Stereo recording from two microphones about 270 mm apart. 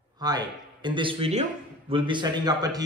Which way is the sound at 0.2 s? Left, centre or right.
Centre.